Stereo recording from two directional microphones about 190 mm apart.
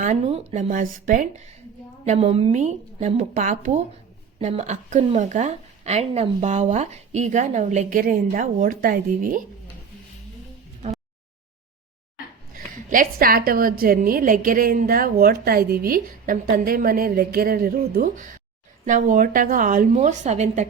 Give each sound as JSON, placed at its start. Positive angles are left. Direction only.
{"t": 0.0, "sound": "a woman's voice", "side_deg": -35}
{"t": 2.0, "sound": "a woman's voice", "side_deg": -35}
{"t": 12.5, "sound": "a woman's voice", "side_deg": -45}